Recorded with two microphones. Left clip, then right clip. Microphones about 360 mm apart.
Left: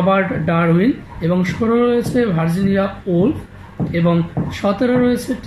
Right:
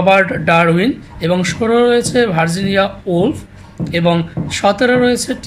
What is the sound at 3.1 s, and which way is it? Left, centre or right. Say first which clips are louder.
Speech: right 2 dB; right.